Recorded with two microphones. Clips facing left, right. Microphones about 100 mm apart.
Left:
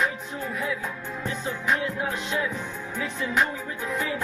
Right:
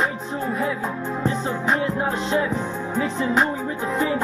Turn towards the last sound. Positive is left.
turn(degrees=-35)  # may be behind; listen again after turning